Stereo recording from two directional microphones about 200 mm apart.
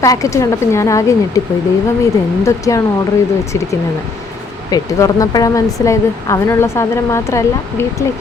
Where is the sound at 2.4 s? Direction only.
15° left (ahead or behind).